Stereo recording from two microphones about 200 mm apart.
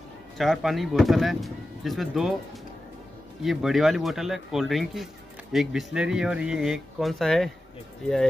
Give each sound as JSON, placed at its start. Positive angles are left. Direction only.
{"t": 0.4, "sound": "speech", "side_deg": 0}
{"t": 3.4, "sound": "speech", "side_deg": 0}